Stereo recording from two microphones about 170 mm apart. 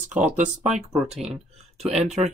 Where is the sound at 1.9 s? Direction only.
40° right (ahead or behind).